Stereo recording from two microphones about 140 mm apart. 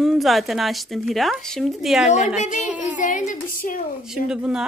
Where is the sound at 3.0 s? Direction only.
70° left (ahead or behind).